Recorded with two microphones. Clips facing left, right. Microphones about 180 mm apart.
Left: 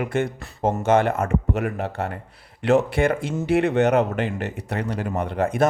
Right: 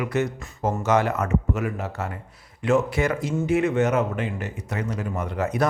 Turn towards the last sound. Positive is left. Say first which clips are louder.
# left 3 dB
turn(degrees=55)  # may be behind; listen again after turning